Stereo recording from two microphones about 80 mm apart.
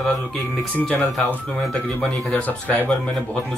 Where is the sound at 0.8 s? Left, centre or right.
Centre.